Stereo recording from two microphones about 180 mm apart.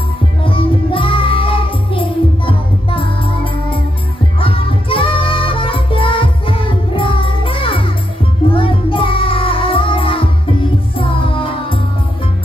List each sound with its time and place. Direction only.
0.4 s music: 30° left (ahead or behind)